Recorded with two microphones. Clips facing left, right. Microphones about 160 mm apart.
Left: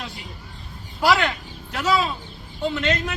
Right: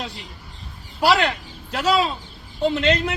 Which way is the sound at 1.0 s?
30° right (ahead or behind).